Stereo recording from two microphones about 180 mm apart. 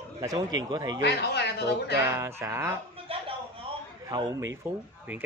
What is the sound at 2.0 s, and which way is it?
Speech, 15° right (ahead or behind).